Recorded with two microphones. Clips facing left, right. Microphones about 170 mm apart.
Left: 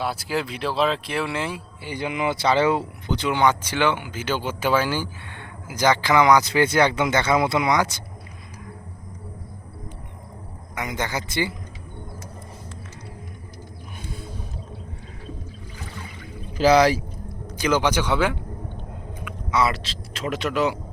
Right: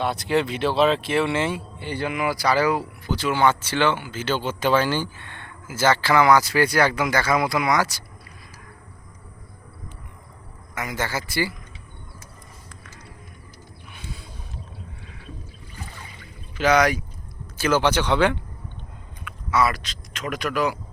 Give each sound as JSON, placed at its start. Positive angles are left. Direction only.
{"t": 0.0, "sound": "speech", "side_deg": 0}
{"t": 1.9, "sound": "speech", "side_deg": 15}
{"t": 10.8, "sound": "speech", "side_deg": 20}
{"t": 14.0, "sound": "a sound", "side_deg": 50}
{"t": 16.6, "sound": "speech", "side_deg": 30}
{"t": 17.6, "sound": "speech", "side_deg": 15}
{"t": 19.2, "sound": "speech", "side_deg": 20}